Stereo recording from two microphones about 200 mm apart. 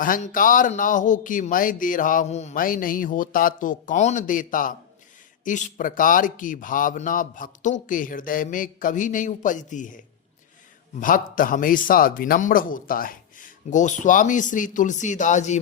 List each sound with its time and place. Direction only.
0.0 s speech: 45° left (ahead or behind)
11.0 s speech: 45° left (ahead or behind)